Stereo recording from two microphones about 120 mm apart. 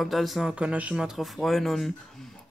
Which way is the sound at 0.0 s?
Centre (ahead or behind).